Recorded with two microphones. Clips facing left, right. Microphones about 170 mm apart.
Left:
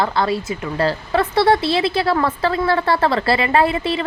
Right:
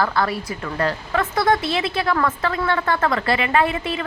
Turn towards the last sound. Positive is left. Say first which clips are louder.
# left 3 dB
turn(degrees=35)  # may be behind; listen again after turning